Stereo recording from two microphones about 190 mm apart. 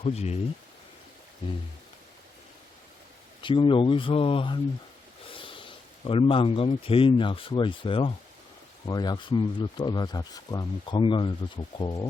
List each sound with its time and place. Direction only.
0.0 s speech: 35° left (ahead or behind)
3.4 s speech: 25° left (ahead or behind)